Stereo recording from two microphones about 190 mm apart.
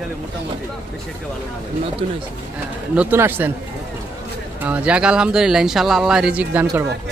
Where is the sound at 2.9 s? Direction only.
10° right (ahead or behind).